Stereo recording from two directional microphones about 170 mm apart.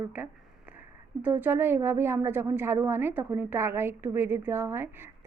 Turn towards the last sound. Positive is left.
turn(degrees=-15)  # may be behind; listen again after turning